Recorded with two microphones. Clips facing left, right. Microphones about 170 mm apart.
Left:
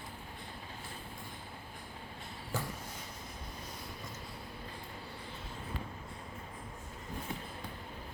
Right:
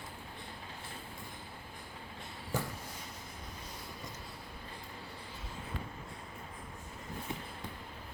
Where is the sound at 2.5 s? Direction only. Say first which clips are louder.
Right 2 dB; 15° right (ahead or behind).